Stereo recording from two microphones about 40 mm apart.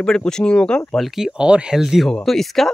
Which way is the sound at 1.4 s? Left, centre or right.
Right.